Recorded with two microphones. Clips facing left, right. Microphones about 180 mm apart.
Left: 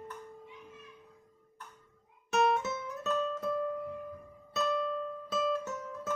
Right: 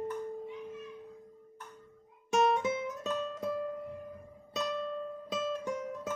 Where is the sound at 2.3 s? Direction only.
15° right (ahead or behind).